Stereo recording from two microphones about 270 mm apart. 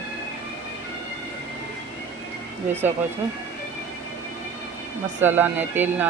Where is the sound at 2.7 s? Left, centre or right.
Centre.